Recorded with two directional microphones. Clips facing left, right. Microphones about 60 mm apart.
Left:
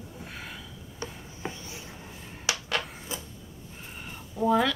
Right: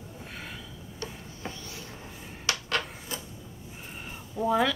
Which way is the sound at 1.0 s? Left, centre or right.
Centre.